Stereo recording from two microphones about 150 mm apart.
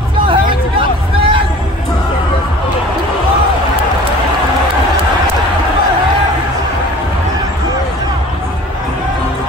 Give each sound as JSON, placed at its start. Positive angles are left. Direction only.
{"t": 0.3, "sound": "hubbub", "side_deg": -35}